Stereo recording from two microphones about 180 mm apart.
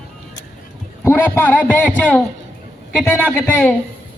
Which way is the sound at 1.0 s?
15° left (ahead or behind).